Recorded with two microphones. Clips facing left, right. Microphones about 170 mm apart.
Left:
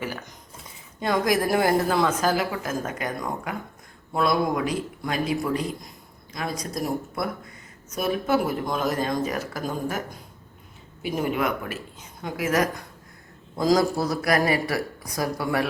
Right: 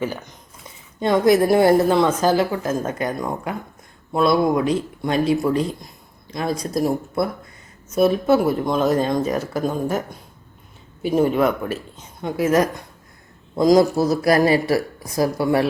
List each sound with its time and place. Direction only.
0.9 s a woman's voice: 25° right (ahead or behind)
11.0 s a woman's voice: 30° right (ahead or behind)